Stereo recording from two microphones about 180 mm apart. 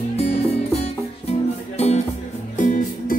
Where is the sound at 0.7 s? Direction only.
35° left (ahead or behind).